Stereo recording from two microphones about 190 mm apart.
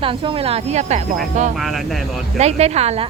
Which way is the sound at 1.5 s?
Centre (ahead or behind).